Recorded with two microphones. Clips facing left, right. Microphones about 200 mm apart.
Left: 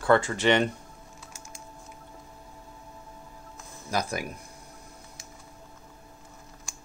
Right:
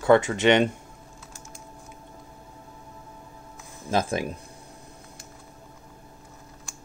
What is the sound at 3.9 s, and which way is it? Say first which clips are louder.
Speech: right 5 dB; 25° right (ahead or behind).